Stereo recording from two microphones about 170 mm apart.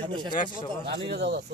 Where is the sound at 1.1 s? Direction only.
80° right.